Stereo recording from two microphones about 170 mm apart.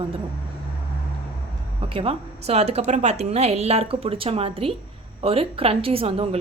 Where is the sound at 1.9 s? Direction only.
35° right (ahead or behind).